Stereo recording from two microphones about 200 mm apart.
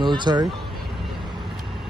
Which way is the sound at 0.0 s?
20° right (ahead or behind).